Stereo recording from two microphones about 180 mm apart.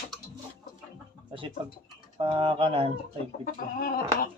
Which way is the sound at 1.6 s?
30° right (ahead or behind).